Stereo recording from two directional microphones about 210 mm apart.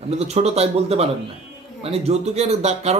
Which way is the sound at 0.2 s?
30° right (ahead or behind).